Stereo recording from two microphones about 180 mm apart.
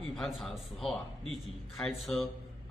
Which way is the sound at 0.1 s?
Centre (ahead or behind).